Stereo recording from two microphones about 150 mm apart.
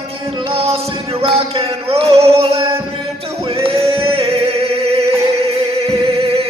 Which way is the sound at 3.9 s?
40° right (ahead or behind).